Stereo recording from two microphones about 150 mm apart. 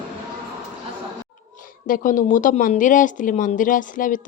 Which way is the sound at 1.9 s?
60° left (ahead or behind).